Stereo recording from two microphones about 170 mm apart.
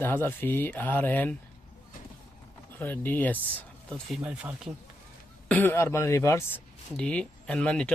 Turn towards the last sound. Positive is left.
turn(degrees=5)  # may be behind; listen again after turning